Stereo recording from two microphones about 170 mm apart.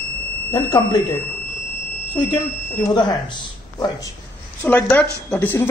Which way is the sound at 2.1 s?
25° left (ahead or behind).